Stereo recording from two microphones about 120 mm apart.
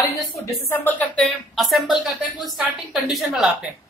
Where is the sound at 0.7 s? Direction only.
15° left (ahead or behind).